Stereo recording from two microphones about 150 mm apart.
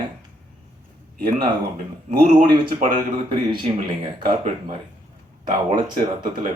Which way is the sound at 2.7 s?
60° right (ahead or behind).